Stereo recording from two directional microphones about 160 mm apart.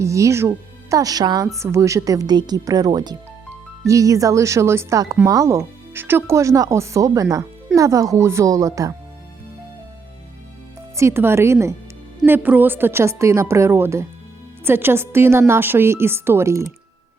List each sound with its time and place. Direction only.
0.0 s speech: 20° right (ahead or behind)
10.9 s a woman's voice: 15° right (ahead or behind)